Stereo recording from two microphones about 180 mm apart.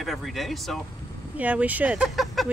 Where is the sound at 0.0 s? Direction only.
Centre (ahead or behind).